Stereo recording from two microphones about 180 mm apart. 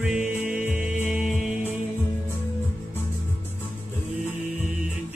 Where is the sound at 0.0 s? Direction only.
5° right (ahead or behind).